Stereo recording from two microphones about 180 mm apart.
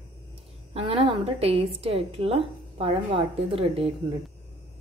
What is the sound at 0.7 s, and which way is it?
A woman's voice, 30° right (ahead or behind).